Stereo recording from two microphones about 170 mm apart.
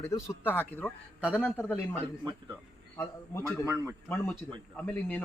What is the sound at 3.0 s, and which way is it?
Speech, 15° left (ahead or behind).